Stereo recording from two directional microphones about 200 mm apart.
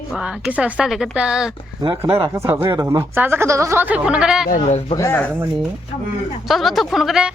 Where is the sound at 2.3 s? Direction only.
15° right (ahead or behind).